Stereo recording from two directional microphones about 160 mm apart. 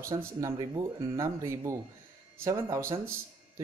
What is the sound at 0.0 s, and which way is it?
Speech, 20° right (ahead or behind).